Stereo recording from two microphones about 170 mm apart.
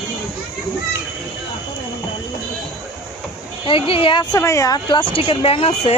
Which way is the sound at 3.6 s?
30° left (ahead or behind).